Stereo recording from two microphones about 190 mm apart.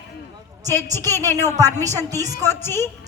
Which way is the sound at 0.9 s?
15° left (ahead or behind).